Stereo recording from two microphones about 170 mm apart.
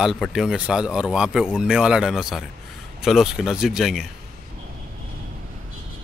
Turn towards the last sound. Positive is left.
turn(degrees=-5)  # may be behind; listen again after turning